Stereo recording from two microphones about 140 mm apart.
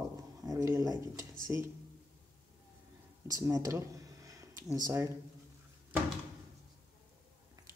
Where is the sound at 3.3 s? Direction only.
25° right (ahead or behind).